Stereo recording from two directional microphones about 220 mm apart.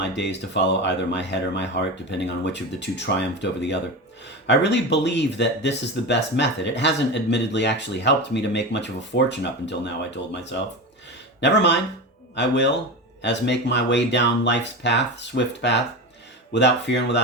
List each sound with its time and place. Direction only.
0.0 s speech: 50° left (ahead or behind)